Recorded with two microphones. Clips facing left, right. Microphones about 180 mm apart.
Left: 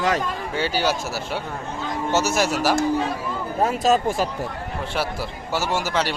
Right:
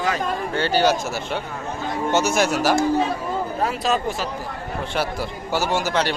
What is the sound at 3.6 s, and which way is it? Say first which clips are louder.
Speech: left 5 dB; 40° left (ahead or behind).